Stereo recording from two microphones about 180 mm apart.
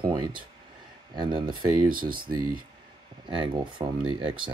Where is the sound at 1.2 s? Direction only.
25° right (ahead or behind).